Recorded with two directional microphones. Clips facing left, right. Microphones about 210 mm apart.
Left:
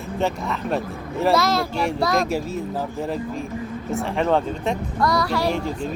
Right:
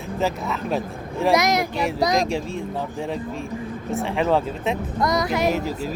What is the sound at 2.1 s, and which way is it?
Speech, 5° left (ahead or behind).